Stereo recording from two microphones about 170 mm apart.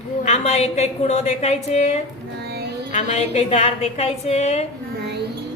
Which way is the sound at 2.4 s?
75° right (ahead or behind).